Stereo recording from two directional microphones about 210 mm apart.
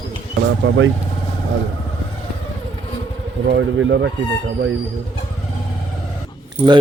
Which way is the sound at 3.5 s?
55° right (ahead or behind).